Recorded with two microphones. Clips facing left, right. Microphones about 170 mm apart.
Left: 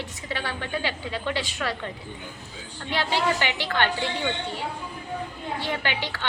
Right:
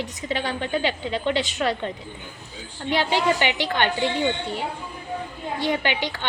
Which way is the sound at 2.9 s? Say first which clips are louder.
Right 4 dB; 15° right (ahead or behind).